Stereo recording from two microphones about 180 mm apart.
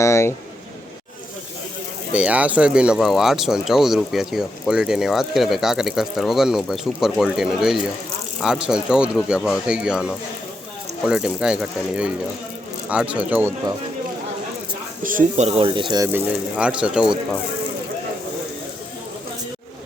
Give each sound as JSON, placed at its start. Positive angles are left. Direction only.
{"t": 0.0, "sound": "a sound", "side_deg": 15}
{"t": 2.1, "sound": "speech", "side_deg": -5}
{"t": 15.0, "sound": "speech", "side_deg": -45}
{"t": 16.1, "sound": "speech", "side_deg": -5}